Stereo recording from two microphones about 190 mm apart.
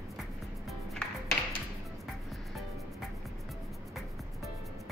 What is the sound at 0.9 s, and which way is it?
Music, centre (ahead or behind).